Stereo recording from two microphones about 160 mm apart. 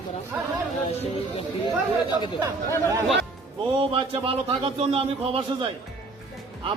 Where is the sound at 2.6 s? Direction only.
15° left (ahead or behind).